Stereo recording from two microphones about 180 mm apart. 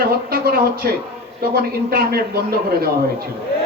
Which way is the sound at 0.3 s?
55° right (ahead or behind).